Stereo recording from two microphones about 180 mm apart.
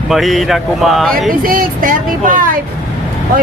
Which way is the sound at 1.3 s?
50° right (ahead or behind).